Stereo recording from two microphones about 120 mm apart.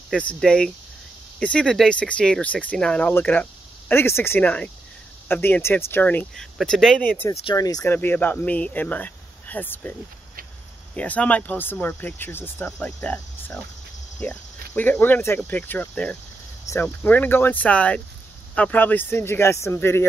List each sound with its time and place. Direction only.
0.1 s speech: 10° left (ahead or behind)
6.3 s speech: 5° left (ahead or behind)
7.5 s speech: 30° left (ahead or behind)
7.9 s speech: 15° left (ahead or behind)
11.0 s speech: 10° left (ahead or behind)